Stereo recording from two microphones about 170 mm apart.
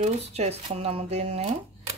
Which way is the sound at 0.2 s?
40° right (ahead or behind).